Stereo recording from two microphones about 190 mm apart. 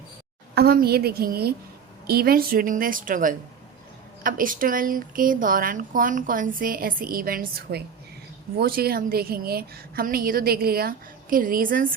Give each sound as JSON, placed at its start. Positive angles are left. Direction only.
{"t": 0.5, "sound": "a woman's voice", "side_deg": -55}